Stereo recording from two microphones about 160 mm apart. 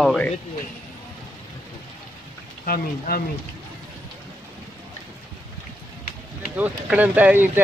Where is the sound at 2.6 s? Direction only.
65° left (ahead or behind).